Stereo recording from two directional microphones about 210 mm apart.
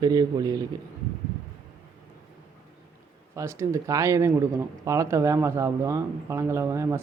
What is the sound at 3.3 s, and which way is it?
Speech, 15° right (ahead or behind).